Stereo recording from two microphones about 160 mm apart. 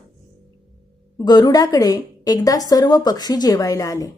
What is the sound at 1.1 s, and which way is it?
A woman's voice, 25° left (ahead or behind).